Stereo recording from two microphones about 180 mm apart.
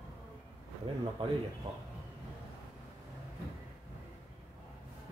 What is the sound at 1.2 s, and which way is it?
Speech, 30° right (ahead or behind).